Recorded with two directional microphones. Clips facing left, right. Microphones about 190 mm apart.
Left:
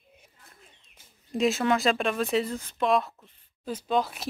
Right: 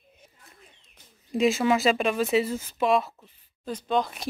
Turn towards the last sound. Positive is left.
turn(degrees=0)  # may be behind; listen again after turning